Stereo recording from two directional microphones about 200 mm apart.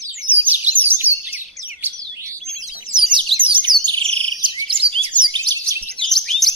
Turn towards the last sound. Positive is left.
turn(degrees=0)  # may be behind; listen again after turning